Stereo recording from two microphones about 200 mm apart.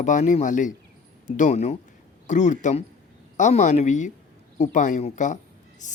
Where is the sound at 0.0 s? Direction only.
40° left (ahead or behind).